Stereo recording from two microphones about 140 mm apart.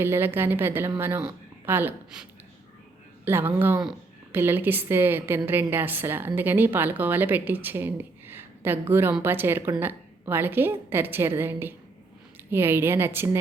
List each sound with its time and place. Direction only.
0.0 s a woman's voice: 15° right (ahead or behind)
3.2 s a woman's voice: 15° right (ahead or behind)